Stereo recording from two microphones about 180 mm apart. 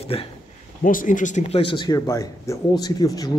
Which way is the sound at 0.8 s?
45° left (ahead or behind).